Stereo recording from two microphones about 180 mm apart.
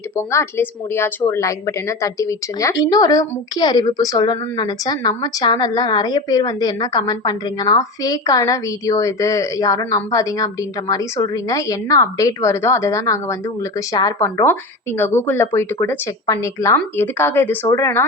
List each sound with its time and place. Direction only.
0.2 s a woman's voice: 15° left (ahead or behind)